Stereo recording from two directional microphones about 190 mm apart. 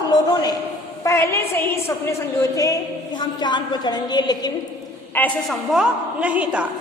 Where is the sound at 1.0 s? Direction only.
15° left (ahead or behind).